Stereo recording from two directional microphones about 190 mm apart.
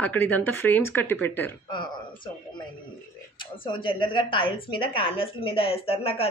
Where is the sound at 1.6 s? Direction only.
25° left (ahead or behind).